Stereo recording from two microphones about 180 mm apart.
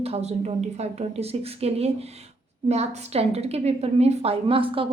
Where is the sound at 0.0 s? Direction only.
35° right (ahead or behind).